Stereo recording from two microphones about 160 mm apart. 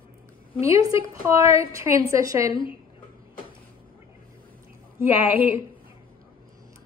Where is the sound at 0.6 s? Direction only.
20° right (ahead or behind).